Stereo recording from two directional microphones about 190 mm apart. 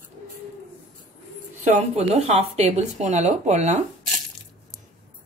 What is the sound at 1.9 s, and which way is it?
Speech, 35° right (ahead or behind).